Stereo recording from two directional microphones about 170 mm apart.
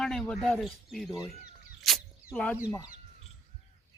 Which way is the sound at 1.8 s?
Centre (ahead or behind).